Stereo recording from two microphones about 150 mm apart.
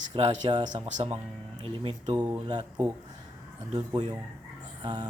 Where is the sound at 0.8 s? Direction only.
50° right (ahead or behind).